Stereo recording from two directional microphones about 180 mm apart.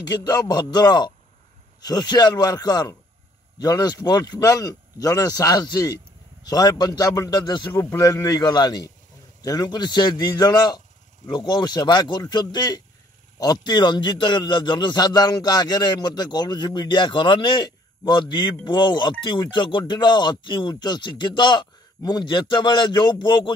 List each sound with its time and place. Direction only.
0.0 s a man's voice: 20° left (ahead or behind)